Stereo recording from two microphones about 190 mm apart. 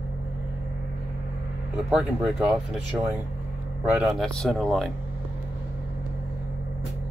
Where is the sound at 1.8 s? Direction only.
5° right (ahead or behind).